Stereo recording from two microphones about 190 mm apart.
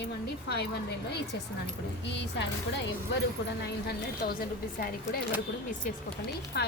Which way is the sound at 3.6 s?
60° left (ahead or behind).